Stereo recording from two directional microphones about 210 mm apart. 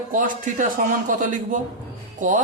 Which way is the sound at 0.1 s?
40° right (ahead or behind).